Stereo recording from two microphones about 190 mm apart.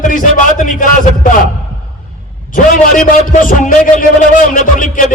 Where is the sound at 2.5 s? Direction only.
50° left (ahead or behind).